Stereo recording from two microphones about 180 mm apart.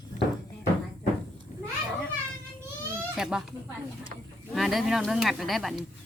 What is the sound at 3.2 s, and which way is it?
Speech, 5° right (ahead or behind).